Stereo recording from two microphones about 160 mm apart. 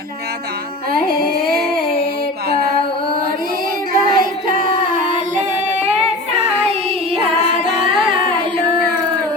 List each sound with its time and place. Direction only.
3.9 s child singing: 60° right (ahead or behind)
7.9 s a capella: 35° right (ahead or behind)